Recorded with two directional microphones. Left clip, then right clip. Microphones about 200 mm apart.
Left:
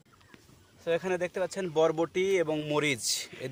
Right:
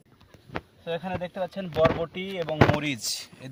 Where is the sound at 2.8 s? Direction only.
45° left (ahead or behind).